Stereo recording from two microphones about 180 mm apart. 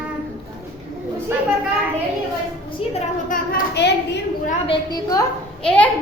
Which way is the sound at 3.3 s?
50° left (ahead or behind).